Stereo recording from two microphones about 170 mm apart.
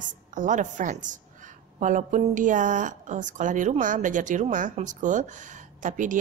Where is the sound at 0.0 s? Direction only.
50° right (ahead or behind).